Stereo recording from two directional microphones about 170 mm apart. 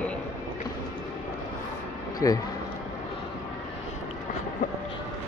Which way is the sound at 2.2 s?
15° left (ahead or behind).